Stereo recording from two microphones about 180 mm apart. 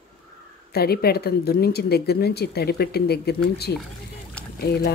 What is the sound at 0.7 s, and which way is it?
Speech, 60° left (ahead or behind).